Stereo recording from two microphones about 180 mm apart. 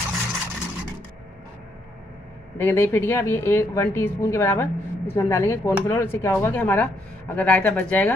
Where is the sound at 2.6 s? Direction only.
15° left (ahead or behind).